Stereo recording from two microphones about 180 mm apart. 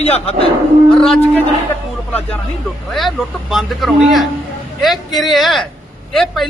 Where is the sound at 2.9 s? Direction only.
Centre (ahead or behind).